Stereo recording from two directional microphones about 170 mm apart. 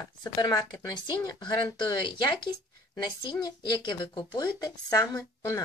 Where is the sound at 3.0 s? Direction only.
25° left (ahead or behind).